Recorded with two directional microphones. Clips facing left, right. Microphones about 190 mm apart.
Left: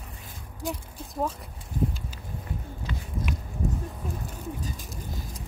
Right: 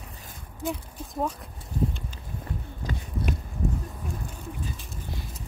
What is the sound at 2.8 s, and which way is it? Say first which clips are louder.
Music: right 3 dB; 40° right (ahead or behind).